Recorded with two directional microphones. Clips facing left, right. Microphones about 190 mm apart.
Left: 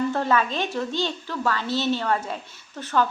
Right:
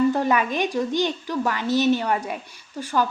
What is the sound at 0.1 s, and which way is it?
A woman's voice, 15° right (ahead or behind).